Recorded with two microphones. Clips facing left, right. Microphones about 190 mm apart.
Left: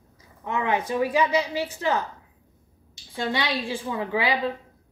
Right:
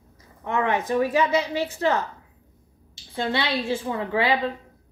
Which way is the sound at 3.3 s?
15° left (ahead or behind).